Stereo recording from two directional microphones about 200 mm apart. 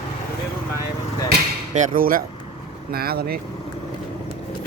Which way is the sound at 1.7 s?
40° right (ahead or behind).